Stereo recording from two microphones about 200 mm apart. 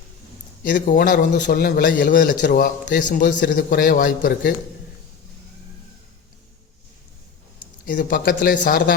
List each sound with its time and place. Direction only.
0.6 s a man's voice: 45° left (ahead or behind)
7.9 s a man's voice: 40° left (ahead or behind)